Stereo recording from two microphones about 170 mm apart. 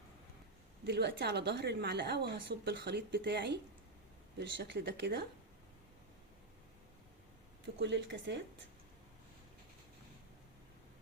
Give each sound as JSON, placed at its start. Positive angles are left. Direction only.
{"t": 0.9, "sound": "a woman's voice", "side_deg": -75}
{"t": 7.8, "sound": "speech", "side_deg": -90}